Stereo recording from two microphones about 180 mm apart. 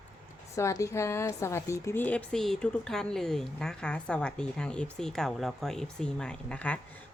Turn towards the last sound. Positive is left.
turn(degrees=5)  # may be behind; listen again after turning